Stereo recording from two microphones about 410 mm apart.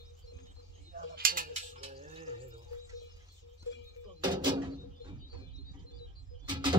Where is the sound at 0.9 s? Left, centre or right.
Right.